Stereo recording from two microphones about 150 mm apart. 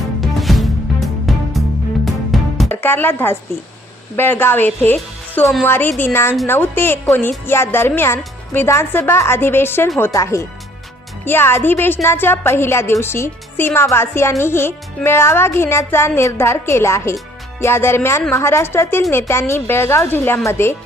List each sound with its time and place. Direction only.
0.2 s music: centre (ahead or behind)
2.6 s a woman's voice: 15° left (ahead or behind)
5.9 s a woman's voice: 5° left (ahead or behind)
6.5 s a woman's voice: 15° left (ahead or behind)